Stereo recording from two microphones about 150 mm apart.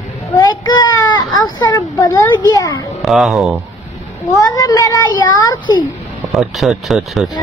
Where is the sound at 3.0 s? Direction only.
Centre (ahead or behind).